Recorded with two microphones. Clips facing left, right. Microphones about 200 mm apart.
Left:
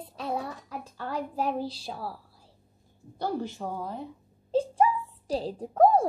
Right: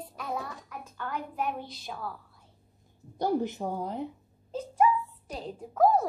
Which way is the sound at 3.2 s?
15° right (ahead or behind).